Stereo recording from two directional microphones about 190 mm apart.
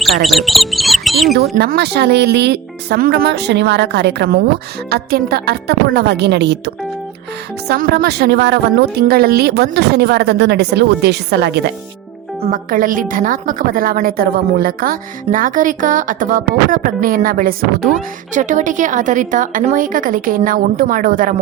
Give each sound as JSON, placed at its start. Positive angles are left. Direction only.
{"t": 0.0, "sound": "speech", "side_deg": 0}
{"t": 1.4, "sound": "a woman's voice", "side_deg": -55}
{"t": 7.7, "sound": "a woman's voice", "side_deg": -55}
{"t": 12.5, "sound": "a woman's voice", "side_deg": -45}